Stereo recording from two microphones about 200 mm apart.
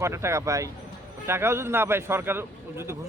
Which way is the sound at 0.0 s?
15° right (ahead or behind).